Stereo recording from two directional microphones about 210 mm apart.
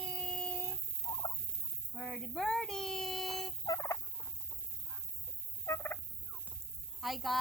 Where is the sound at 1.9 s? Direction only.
Centre (ahead or behind).